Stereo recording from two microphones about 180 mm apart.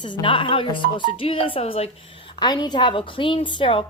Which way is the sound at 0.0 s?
25° left (ahead or behind).